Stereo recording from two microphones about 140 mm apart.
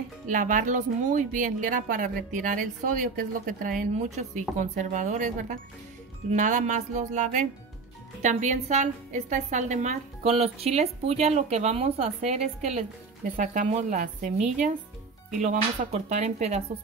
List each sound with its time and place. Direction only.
0.3 s speech: 70° right (ahead or behind)
4.4 s a woman's voice: 65° right (ahead or behind)
13.4 s speech: 60° right (ahead or behind)